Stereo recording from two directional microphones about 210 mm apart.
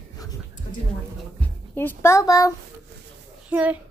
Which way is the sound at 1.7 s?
10° left (ahead or behind).